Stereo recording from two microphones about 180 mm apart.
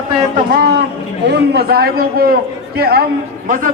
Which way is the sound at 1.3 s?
60° right (ahead or behind).